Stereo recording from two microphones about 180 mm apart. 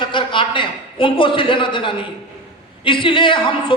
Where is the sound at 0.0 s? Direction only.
25° left (ahead or behind).